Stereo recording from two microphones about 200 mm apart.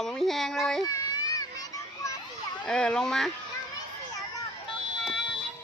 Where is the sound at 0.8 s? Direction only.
20° left (ahead or behind).